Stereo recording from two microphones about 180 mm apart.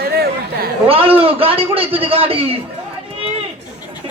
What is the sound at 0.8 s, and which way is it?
A man's voice, 30° right (ahead or behind).